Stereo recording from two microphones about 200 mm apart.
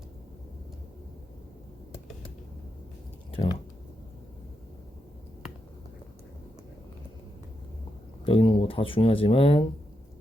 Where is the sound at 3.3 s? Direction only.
25° left (ahead or behind).